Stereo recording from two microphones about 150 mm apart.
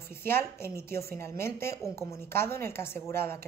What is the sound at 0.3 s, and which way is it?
Speech, 15° left (ahead or behind).